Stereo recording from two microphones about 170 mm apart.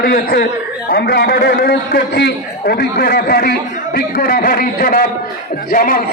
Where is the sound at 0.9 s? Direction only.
70° left (ahead or behind).